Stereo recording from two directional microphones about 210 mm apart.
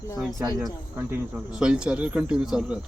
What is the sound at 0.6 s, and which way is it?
Speech, 5° right (ahead or behind).